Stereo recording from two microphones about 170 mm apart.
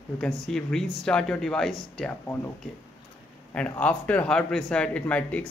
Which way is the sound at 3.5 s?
10° left (ahead or behind).